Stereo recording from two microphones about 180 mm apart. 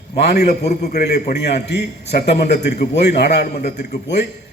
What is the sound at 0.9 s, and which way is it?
A man's voice, 55° left (ahead or behind).